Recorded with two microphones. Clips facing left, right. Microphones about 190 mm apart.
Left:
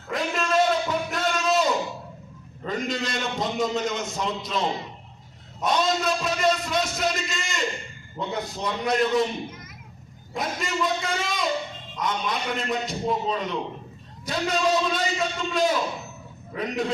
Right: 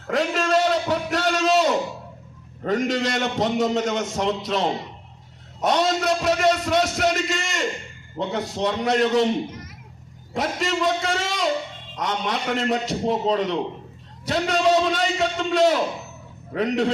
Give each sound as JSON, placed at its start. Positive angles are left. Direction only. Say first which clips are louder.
{"t": 0.1, "sound": "a sound", "louder": "right 4 dB", "side_deg": -75}
{"t": 2.6, "sound": "a man's voice", "louder": "right 6 dB", "side_deg": -75}
{"t": 5.6, "sound": "a man's voice", "louder": "right 3 dB", "side_deg": -75}
{"t": 10.3, "sound": "a man's voice", "louder": "right 4 dB", "side_deg": -80}